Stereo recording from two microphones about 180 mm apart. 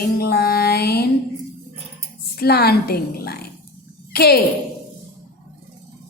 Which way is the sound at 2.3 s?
60° left (ahead or behind).